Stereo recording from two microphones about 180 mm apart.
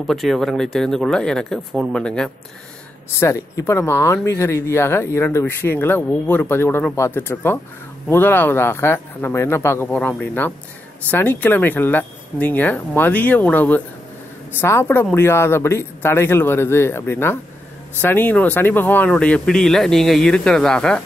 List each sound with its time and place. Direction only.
0.0 s speech: centre (ahead or behind)
3.2 s speech: 15° left (ahead or behind)